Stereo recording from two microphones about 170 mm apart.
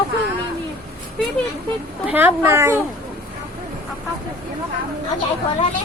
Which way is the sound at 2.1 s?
10° right (ahead or behind).